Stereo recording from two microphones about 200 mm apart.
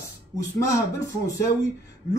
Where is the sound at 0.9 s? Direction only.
15° left (ahead or behind).